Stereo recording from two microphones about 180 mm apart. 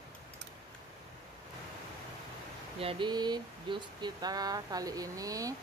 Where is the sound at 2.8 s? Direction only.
30° right (ahead or behind).